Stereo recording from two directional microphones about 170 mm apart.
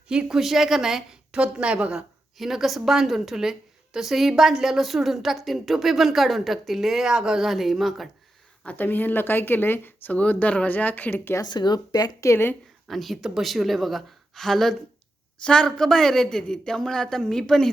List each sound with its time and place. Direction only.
0.1 s a woman's voice: 5° right (ahead or behind)
8.6 s speech: 10° left (ahead or behind)
11.4 s speech: 25° left (ahead or behind)
12.9 s a woman's voice: centre (ahead or behind)